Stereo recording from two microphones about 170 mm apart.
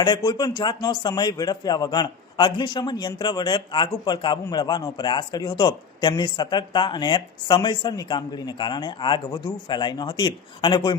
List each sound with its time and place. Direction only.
0.0 s a man's voice: 25° left (ahead or behind)